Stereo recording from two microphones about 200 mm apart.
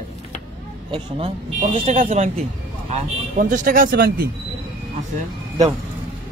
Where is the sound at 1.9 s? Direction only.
35° right (ahead or behind).